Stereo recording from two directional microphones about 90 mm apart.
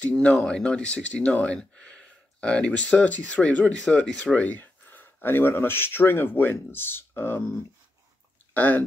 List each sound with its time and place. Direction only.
0.0 s speech: 15° left (ahead or behind)
8.5 s speech: 20° left (ahead or behind)